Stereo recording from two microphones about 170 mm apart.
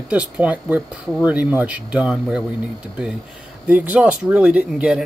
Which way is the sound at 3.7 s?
10° right (ahead or behind).